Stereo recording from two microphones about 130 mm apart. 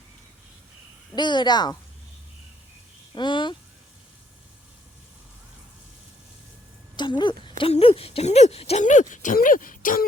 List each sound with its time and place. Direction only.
1.1 s speech: 35° left (ahead or behind)
3.2 s speech: 35° left (ahead or behind)
6.9 s a woman's voice: 35° left (ahead or behind); by 8.8 s 50° left (ahead or behind)
8.8 s speech: 75° left (ahead or behind); by 10.1 s 90° left